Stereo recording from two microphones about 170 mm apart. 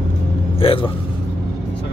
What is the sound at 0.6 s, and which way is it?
Speech, 30° left (ahead or behind).